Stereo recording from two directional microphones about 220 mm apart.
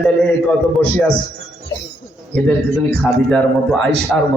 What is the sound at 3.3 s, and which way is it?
Speech, centre (ahead or behind).